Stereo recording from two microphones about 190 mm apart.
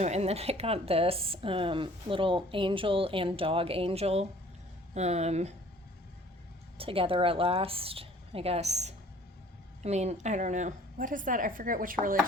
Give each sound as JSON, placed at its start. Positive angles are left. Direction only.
{"t": 0.0, "sound": "a woman's voice", "side_deg": -35}
{"t": 6.7, "sound": "a woman's voice", "side_deg": -30}